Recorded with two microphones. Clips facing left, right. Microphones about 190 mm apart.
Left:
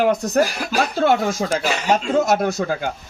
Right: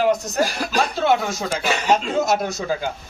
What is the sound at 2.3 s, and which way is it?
Speech, 60° left (ahead or behind).